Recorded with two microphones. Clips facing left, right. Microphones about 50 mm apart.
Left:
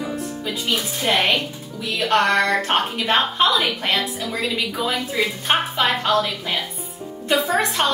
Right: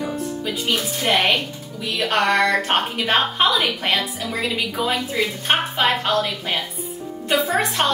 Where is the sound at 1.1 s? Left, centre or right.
Centre.